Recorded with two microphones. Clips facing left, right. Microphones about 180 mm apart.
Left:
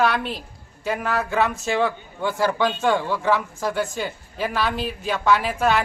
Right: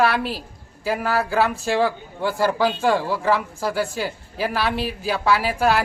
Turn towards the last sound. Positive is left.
turn(degrees=-5)  # may be behind; listen again after turning